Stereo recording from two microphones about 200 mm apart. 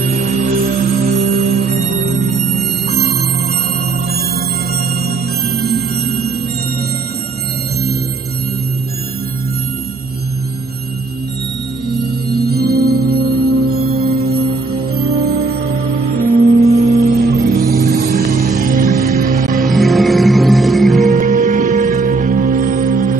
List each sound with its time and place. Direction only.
0.0 s music: 45° right (ahead or behind)
5.0 s music: 50° right (ahead or behind)
12.3 s music: 50° right (ahead or behind)
16.6 s music: 35° right (ahead or behind)
19.7 s music: centre (ahead or behind)
21.0 s music: 40° right (ahead or behind)